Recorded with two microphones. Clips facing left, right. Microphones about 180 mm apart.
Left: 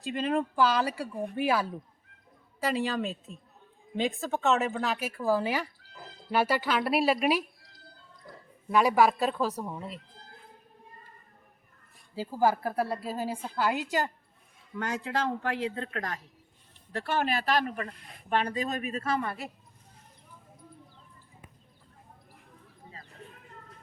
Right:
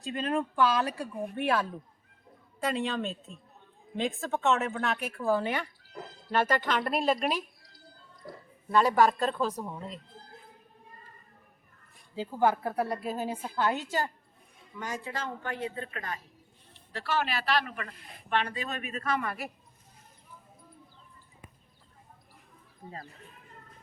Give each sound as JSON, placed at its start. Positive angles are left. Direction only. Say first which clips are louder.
{"t": 0.0, "sound": "a man's voice", "louder": "left 2 dB", "side_deg": 0}
{"t": 8.7, "sound": "a man's voice", "louder": "left 1 dB", "side_deg": 10}
{"t": 12.1, "sound": "a man's voice", "louder": "even", "side_deg": 5}
{"t": 14.8, "sound": "speech", "louder": "left 5 dB", "side_deg": 70}
{"t": 16.9, "sound": "a woman's voice", "louder": "left 2 dB", "side_deg": 50}